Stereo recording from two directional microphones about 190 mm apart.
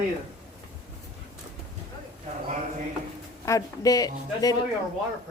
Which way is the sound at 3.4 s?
15° left (ahead or behind).